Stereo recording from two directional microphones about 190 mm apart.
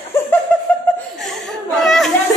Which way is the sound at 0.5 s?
10° left (ahead or behind).